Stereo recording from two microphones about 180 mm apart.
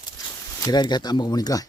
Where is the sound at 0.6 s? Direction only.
20° left (ahead or behind).